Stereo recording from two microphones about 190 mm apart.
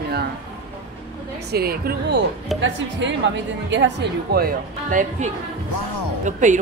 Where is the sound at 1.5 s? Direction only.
55° right (ahead or behind).